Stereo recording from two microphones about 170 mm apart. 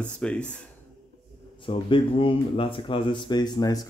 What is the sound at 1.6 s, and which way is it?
Speech, 30° left (ahead or behind).